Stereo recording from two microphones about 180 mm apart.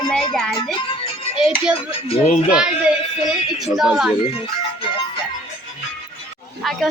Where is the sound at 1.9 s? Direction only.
35° left (ahead or behind).